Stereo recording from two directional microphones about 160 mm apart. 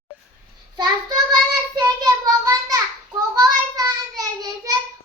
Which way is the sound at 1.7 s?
20° right (ahead or behind).